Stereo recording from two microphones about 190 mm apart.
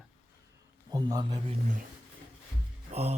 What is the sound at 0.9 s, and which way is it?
Speech, 20° right (ahead or behind).